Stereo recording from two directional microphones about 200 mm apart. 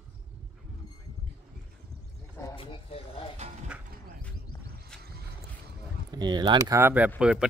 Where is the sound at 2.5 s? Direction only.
25° left (ahead or behind).